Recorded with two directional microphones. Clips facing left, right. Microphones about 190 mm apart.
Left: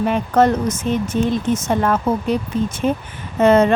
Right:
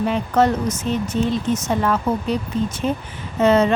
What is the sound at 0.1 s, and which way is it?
Speech, 50° left (ahead or behind).